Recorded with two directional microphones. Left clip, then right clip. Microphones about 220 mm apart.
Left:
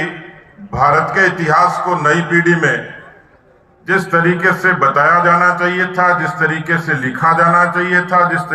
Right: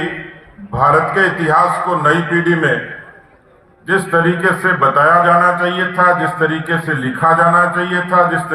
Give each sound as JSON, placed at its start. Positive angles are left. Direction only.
{"t": 0.7, "sound": "a man's voice", "side_deg": 30}
{"t": 3.8, "sound": "a man's voice", "side_deg": 30}